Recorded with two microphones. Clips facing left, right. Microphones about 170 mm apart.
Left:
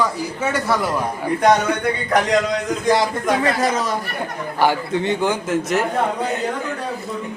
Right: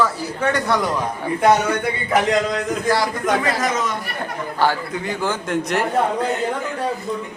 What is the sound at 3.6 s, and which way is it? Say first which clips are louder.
A man's voice: left 2 dB; 35° left (ahead or behind).